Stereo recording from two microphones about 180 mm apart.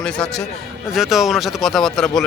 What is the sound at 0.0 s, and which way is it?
A man's voice, 5° left (ahead or behind).